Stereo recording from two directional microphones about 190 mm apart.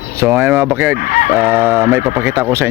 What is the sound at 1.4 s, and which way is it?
Speech, 10° right (ahead or behind).